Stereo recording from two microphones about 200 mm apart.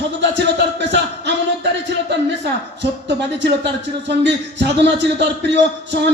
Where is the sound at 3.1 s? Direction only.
60° right (ahead or behind).